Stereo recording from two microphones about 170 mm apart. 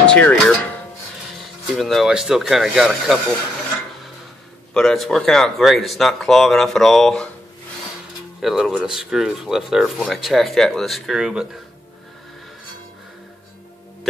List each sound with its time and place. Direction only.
0.0 s speech: 10° left (ahead or behind)
1.8 s speech: centre (ahead or behind)
4.7 s speech: centre (ahead or behind)
8.4 s speech: centre (ahead or behind)